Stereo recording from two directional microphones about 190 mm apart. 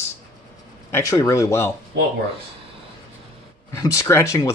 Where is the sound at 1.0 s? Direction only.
15° left (ahead or behind).